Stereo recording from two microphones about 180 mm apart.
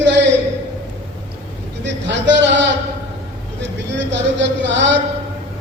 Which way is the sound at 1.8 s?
85° right.